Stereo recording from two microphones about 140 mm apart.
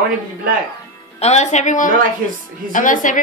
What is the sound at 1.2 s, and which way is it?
A woman's voice, 55° left (ahead or behind).